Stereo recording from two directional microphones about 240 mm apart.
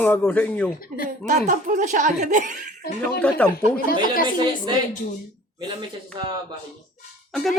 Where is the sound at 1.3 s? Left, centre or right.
Right.